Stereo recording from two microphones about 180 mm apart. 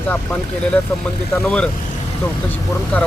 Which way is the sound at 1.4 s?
5° left (ahead or behind).